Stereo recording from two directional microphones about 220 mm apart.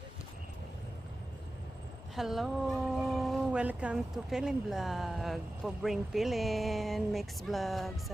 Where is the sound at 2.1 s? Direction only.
Centre (ahead or behind).